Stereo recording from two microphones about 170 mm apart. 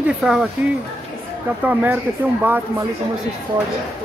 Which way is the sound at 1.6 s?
10° right (ahead or behind).